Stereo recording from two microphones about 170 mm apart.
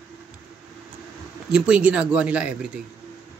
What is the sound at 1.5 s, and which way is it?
Speech, 5° right (ahead or behind).